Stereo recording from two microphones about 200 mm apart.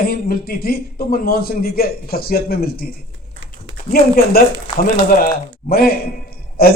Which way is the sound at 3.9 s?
50° left (ahead or behind).